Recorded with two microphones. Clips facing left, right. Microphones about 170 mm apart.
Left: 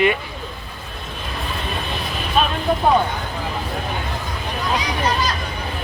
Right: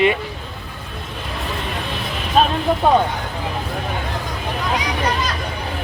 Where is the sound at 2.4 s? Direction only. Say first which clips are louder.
Right 3 dB; 35° right (ahead or behind).